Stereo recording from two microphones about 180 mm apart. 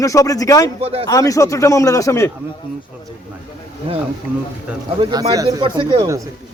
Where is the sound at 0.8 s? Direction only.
30° right (ahead or behind).